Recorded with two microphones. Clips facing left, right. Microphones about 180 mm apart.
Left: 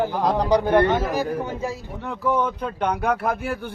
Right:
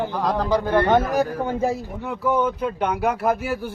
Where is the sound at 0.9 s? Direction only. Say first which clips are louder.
Right 3 dB; 55° right (ahead or behind).